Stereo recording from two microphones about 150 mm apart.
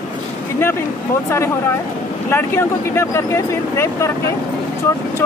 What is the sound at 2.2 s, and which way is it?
Speech, 15° left (ahead or behind).